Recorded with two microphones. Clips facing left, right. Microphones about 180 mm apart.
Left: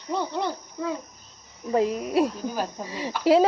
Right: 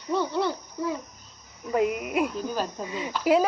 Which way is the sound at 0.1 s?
15° left (ahead or behind).